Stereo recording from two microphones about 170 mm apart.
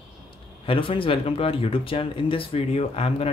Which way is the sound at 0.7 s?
30° left (ahead or behind).